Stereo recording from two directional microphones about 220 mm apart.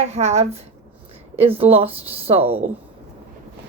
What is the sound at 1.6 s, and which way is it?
Speech, 25° right (ahead or behind).